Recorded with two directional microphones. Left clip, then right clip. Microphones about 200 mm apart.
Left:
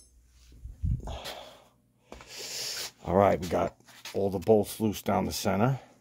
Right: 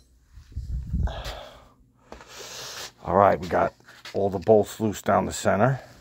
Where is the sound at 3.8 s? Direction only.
35° right (ahead or behind).